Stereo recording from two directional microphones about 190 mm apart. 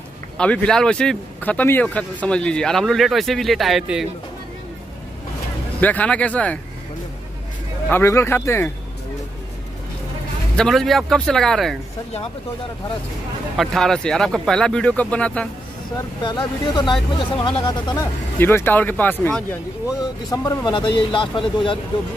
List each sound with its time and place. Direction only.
0.4 s speech: 5° left (ahead or behind)
5.8 s speech: 10° left (ahead or behind)
7.9 s speech: 15° left (ahead or behind)
10.5 s speech: centre (ahead or behind)
13.6 s speech: centre (ahead or behind)
16.3 s speech: 25° left (ahead or behind)
18.4 s speech: 10° left (ahead or behind)